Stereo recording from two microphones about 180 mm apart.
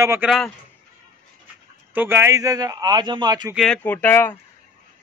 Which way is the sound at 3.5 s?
5° left (ahead or behind).